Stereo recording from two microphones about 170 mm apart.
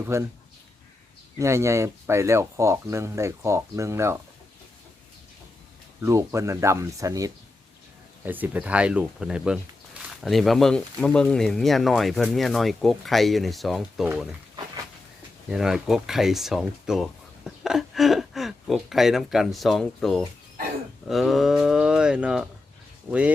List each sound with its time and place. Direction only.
0.0 s speech: 15° right (ahead or behind)
1.4 s speech: 15° right (ahead or behind)
6.0 s speech: 15° right (ahead or behind); by 14.1 s centre (ahead or behind)
15.4 s speech: 5° right (ahead or behind)